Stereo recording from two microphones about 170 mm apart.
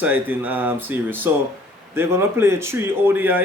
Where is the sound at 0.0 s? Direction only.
10° right (ahead or behind).